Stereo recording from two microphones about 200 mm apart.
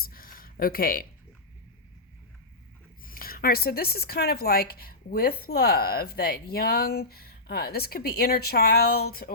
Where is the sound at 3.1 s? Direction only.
45° left (ahead or behind).